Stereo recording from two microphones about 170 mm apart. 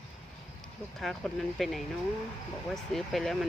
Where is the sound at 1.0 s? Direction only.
Centre (ahead or behind).